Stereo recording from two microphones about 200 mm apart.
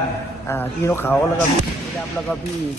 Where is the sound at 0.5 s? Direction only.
10° left (ahead or behind).